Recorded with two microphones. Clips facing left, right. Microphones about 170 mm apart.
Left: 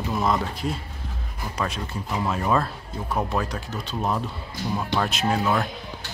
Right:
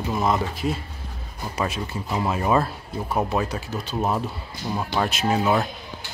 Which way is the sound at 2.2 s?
10° right (ahead or behind).